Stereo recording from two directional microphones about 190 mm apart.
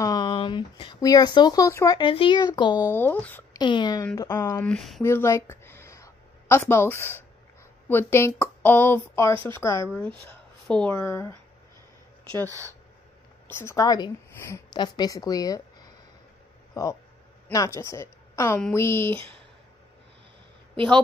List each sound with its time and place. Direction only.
0.0 s a woman's voice: 20° left (ahead or behind)
2.9 s speech: 10° left (ahead or behind)
3.5 s speech: 25° left (ahead or behind); by 5.0 s centre (ahead or behind)
5.0 s a sound: 15° left (ahead or behind)
7.9 s speech: 10° left (ahead or behind)
12.4 s speech: 15° right (ahead or behind)
13.6 s a woman's voice: 15° left (ahead or behind)
19.1 s speech: 30° right (ahead or behind)